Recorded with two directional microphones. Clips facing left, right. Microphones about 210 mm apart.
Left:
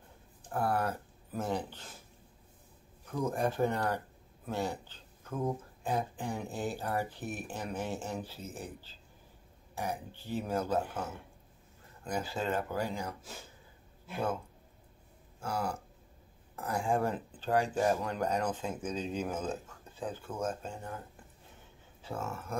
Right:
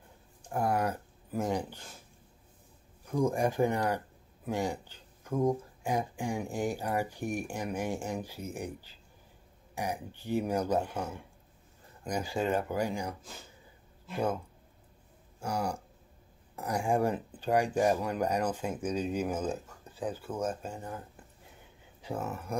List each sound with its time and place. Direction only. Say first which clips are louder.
0.5 s speech: right 2 dB; 15° right (ahead or behind)
3.1 s speech: right 4 dB; 10° right (ahead or behind)
12.1 s speech: right 3 dB; 15° right (ahead or behind)
15.4 s speech: right 2 dB; 15° right (ahead or behind)
22.0 s speech: right 3 dB; 15° right (ahead or behind)